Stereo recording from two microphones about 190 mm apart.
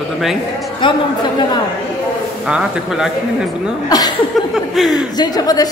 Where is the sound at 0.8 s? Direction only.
25° left (ahead or behind).